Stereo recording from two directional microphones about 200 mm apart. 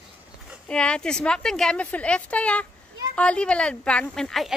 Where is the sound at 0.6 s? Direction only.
5° left (ahead or behind).